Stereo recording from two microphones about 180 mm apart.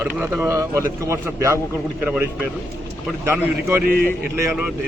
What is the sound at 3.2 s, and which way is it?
Speech, 15° right (ahead or behind).